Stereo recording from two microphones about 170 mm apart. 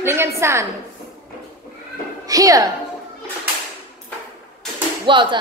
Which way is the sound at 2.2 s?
20° right (ahead or behind).